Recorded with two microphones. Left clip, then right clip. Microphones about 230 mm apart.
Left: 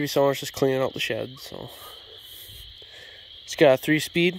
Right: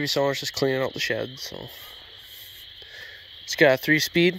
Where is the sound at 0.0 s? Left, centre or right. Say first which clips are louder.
Left 2 dB; centre.